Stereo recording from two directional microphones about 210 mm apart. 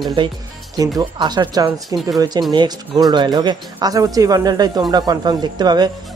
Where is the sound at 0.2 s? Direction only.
25° right (ahead or behind).